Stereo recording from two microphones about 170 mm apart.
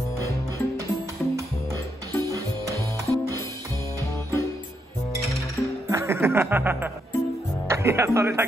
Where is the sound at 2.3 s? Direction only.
20° right (ahead or behind).